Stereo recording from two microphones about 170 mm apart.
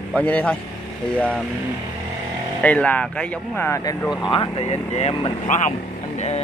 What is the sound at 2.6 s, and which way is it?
Speech, 10° left (ahead or behind).